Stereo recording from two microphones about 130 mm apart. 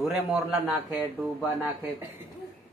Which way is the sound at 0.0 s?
5° right (ahead or behind).